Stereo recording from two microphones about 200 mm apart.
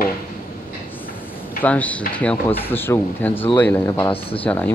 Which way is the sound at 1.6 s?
5° left (ahead or behind).